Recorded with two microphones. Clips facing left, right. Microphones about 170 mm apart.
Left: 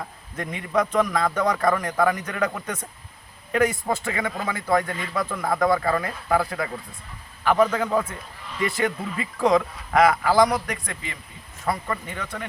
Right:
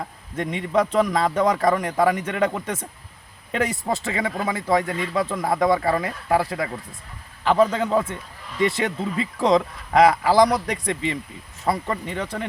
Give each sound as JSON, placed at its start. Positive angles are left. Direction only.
{"t": 0.3, "sound": "a man's voice", "side_deg": -30}
{"t": 7.4, "sound": "a man's voice", "side_deg": -30}